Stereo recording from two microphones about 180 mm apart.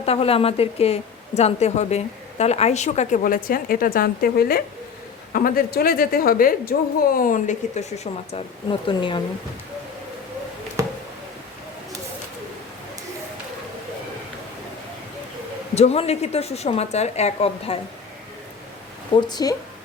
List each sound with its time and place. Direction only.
0.0 s a woman's voice: 35° left (ahead or behind)
10.8 s a sound: 20° right (ahead or behind)
15.7 s a woman's voice: 35° left (ahead or behind)
19.1 s speech: 20° left (ahead or behind)